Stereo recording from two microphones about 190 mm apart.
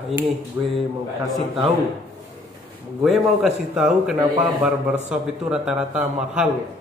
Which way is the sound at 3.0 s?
Centre (ahead or behind).